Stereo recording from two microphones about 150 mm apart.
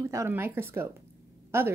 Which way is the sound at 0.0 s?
20° right (ahead or behind).